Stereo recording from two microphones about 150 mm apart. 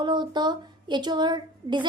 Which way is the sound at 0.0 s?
30° right (ahead or behind).